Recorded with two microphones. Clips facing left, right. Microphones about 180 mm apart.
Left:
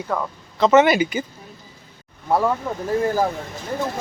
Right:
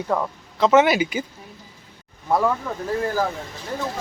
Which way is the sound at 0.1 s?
10° right (ahead or behind).